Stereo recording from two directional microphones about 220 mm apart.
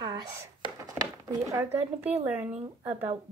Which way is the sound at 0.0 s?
15° right (ahead or behind).